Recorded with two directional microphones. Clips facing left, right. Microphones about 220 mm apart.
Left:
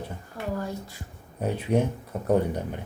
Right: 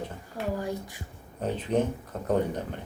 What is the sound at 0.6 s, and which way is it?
Speech, 15° right (ahead or behind).